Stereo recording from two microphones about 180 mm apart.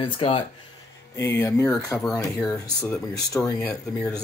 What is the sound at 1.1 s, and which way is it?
Speech, 15° left (ahead or behind).